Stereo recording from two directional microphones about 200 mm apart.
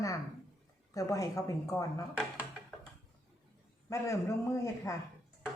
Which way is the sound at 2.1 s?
Centre (ahead or behind).